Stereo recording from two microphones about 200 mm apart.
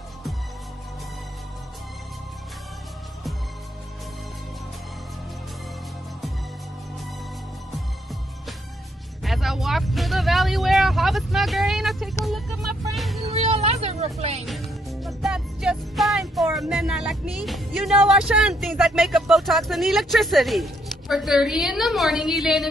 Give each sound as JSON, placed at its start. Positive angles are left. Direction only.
{"t": 9.2, "sound": "vehicle", "side_deg": 0}
{"t": 12.9, "sound": "music", "side_deg": 0}
{"t": 13.3, "sound": "vehicle", "side_deg": -30}
{"t": 14.4, "sound": "music", "side_deg": 0}